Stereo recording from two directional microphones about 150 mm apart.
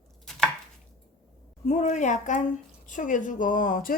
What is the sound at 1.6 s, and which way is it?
A woman's voice, 50° left (ahead or behind).